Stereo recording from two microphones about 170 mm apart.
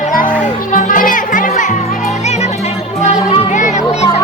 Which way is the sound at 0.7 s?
50° left (ahead or behind).